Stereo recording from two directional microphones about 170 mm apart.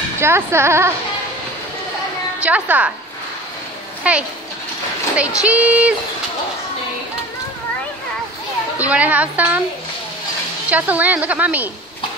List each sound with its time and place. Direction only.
0.2 s a woman's voice: 15° right (ahead or behind)
2.4 s a woman's voice: 10° right (ahead or behind)
4.1 s a woman's voice: 5° right (ahead or behind)
8.7 s a woman's voice: 10° right (ahead or behind)
10.7 s a woman's voice: 10° right (ahead or behind)